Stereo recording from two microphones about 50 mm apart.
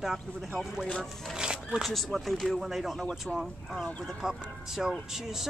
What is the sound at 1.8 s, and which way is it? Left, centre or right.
Speech, centre.